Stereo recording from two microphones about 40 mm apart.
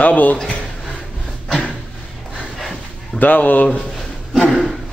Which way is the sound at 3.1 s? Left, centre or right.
Left.